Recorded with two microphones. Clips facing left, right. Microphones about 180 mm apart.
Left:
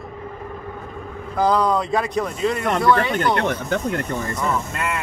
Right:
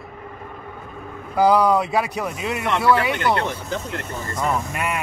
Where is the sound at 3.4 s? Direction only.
60° left (ahead or behind).